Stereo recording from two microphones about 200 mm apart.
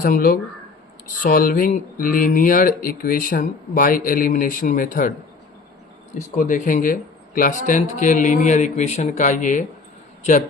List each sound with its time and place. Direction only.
0.0 s speech: 45° left (ahead or behind)
6.1 s speech: 40° left (ahead or behind)